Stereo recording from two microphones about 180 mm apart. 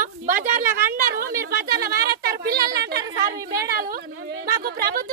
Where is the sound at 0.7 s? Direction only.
15° right (ahead or behind).